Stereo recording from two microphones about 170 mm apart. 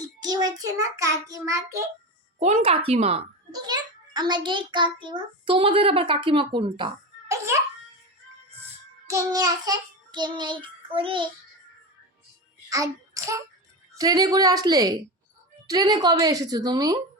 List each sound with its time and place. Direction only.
0.0 s child singing: 20° right (ahead or behind)
2.4 s a woman's voice: 40° right (ahead or behind)
3.5 s a child's voice: 25° right (ahead or behind)
9.0 s child singing: 20° right (ahead or behind)
12.7 s a child's voice: 20° right (ahead or behind)